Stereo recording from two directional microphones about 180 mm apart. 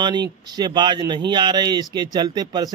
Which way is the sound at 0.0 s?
25° right (ahead or behind).